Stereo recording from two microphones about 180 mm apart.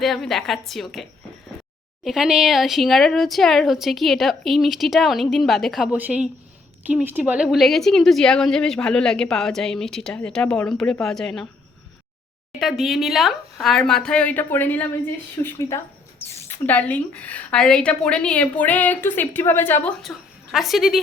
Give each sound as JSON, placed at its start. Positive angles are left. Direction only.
{"t": 0.0, "sound": "a woman's voice", "side_deg": 0}
{"t": 2.0, "sound": "a woman's voice", "side_deg": -5}
{"t": 12.5, "sound": "a woman's voice", "side_deg": 0}
{"t": 20.0, "sound": "a woman's voice", "side_deg": 0}